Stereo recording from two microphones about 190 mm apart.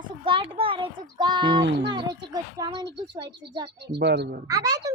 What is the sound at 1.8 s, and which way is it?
Speech, 25° right (ahead or behind).